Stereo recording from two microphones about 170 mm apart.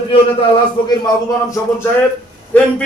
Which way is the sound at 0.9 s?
20° left (ahead or behind).